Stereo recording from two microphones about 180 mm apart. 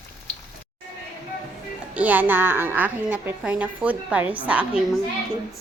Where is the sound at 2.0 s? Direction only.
10° right (ahead or behind).